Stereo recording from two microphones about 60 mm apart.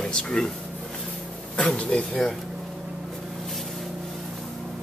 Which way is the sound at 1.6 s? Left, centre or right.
Centre.